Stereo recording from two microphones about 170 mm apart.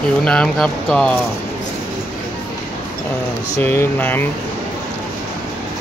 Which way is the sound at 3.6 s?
10° left (ahead or behind).